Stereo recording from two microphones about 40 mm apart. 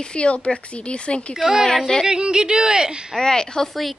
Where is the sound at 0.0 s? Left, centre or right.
Left.